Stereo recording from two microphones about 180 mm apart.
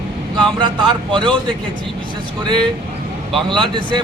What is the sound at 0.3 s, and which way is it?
Speech, 25° right (ahead or behind).